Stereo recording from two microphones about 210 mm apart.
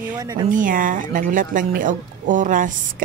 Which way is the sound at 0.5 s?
40° right (ahead or behind).